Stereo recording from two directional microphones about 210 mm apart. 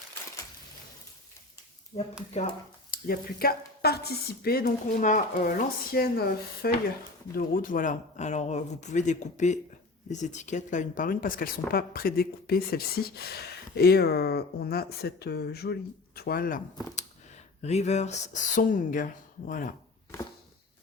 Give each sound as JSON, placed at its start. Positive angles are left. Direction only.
{"t": 1.9, "sound": "speech", "side_deg": 35}